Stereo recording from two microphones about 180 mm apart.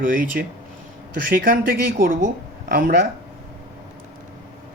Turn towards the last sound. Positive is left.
turn(degrees=-55)  # may be behind; listen again after turning